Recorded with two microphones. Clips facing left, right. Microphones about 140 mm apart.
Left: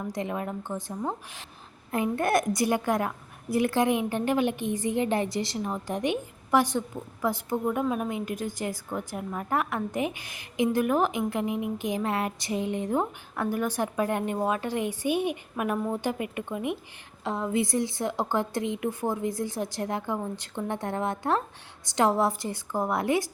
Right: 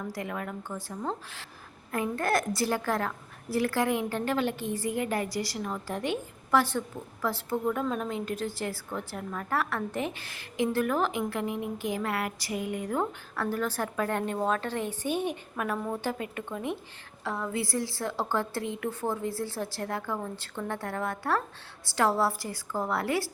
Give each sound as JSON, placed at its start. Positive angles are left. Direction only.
{"t": 0.0, "sound": "a woman's voice", "side_deg": 20}